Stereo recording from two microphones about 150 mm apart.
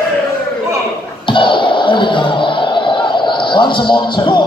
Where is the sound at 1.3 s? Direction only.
35° left (ahead or behind).